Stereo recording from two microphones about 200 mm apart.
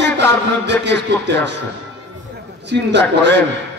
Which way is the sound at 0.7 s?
60° right (ahead or behind).